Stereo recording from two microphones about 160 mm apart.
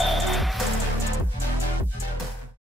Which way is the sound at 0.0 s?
Centre (ahead or behind).